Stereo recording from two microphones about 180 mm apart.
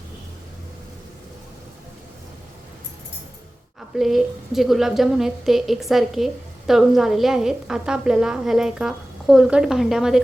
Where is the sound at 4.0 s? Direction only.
Centre (ahead or behind).